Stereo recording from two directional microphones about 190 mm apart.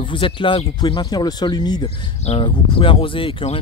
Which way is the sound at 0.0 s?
25° left (ahead or behind).